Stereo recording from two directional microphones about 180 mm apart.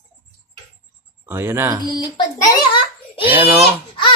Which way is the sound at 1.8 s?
25° left (ahead or behind).